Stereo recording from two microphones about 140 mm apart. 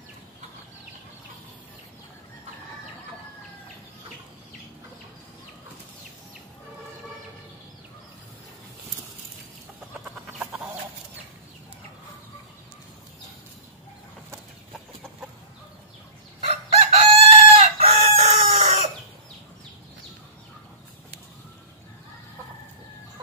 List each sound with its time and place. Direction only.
16.4 s chicken: 40° right (ahead or behind)